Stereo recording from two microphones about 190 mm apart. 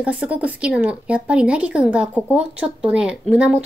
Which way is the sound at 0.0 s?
5° right (ahead or behind).